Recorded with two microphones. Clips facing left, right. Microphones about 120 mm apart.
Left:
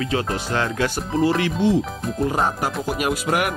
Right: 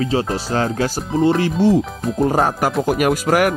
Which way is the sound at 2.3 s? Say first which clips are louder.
Right 5 dB; 50° right (ahead or behind).